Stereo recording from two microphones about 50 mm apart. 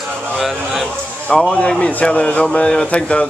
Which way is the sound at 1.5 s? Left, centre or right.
Left.